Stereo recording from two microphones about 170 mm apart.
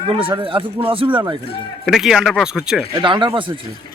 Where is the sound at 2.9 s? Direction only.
30° right (ahead or behind).